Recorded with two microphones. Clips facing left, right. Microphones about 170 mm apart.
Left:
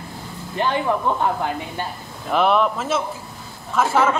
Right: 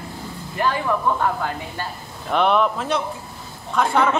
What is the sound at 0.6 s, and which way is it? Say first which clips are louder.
Speech: left 1 dB; 25° left (ahead or behind).